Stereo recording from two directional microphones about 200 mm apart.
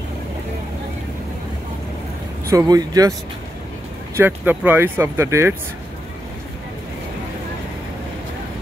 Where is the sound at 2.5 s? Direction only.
15° right (ahead or behind).